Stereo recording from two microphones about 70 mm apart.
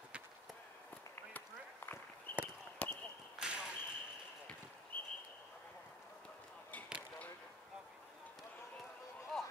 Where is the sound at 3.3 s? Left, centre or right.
Centre.